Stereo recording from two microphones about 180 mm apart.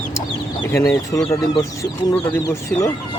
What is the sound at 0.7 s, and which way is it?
Speech, 15° left (ahead or behind).